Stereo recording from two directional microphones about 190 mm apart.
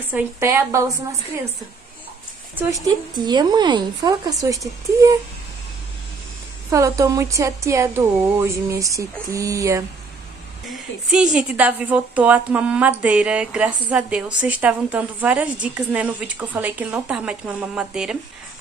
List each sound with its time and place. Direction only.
0.1 s a woman's voice: 10° right (ahead or behind)
2.5 s speech: 20° right (ahead or behind)
6.7 s a woman's voice: 15° right (ahead or behind)
11.1 s a woman's voice: 5° right (ahead or behind)